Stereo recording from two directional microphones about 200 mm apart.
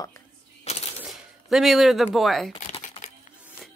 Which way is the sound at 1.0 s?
Centre (ahead or behind).